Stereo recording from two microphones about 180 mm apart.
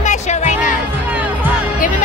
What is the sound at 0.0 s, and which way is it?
Music, 40° left (ahead or behind).